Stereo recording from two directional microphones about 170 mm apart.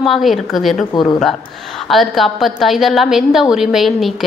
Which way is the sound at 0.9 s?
25° left (ahead or behind).